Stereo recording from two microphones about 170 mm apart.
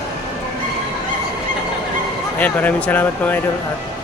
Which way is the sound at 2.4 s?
10° left (ahead or behind).